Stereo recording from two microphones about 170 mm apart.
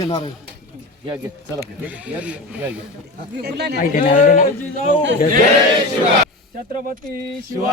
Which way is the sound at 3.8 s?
50° left (ahead or behind).